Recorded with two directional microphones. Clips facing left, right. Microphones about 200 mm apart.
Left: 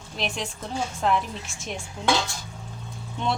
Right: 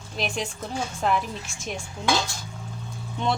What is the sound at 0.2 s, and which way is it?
Speech, centre (ahead or behind).